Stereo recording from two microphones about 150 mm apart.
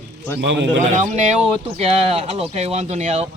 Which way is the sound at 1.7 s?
45° right (ahead or behind).